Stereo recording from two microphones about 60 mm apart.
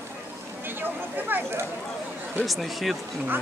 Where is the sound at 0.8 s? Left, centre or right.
Right.